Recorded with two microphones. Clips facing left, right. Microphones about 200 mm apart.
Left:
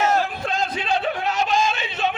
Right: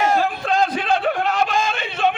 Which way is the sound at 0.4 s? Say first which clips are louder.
Right 5 dB; 55° right (ahead or behind).